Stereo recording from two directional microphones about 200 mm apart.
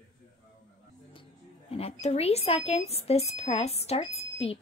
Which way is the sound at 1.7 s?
30° left (ahead or behind).